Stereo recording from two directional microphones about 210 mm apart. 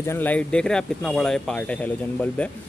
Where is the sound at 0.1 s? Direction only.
10° left (ahead or behind).